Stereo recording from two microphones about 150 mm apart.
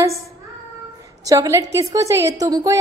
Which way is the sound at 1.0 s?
25° right (ahead or behind).